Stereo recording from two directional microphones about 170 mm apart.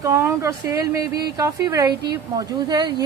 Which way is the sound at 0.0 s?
15° right (ahead or behind).